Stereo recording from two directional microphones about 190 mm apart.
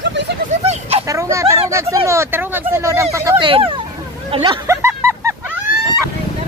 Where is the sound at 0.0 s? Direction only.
65° right (ahead or behind).